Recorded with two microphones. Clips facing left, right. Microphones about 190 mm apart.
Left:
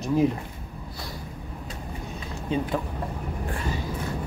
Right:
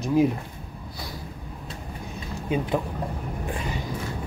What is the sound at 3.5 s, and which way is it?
Vehicle, 15° right (ahead or behind).